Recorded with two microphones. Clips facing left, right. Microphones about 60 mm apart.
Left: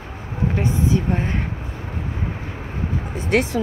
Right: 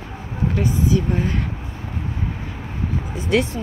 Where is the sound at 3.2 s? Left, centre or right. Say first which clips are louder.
Even; left.